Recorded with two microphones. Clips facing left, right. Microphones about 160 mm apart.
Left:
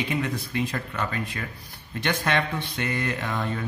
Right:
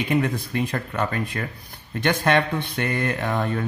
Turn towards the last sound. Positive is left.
turn(degrees=-45)  # may be behind; listen again after turning